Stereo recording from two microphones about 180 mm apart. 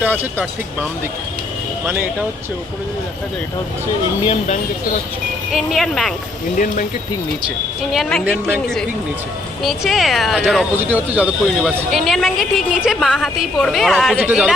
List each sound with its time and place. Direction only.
0.0 s speech: 10° right (ahead or behind)
4.3 s speech: 40° left (ahead or behind)
5.5 s speech: centre (ahead or behind)
7.9 s speech: 5° right (ahead or behind)
9.6 s speech: centre (ahead or behind)